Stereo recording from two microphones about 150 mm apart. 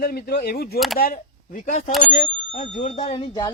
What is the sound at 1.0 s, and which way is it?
Speech, 70° left (ahead or behind).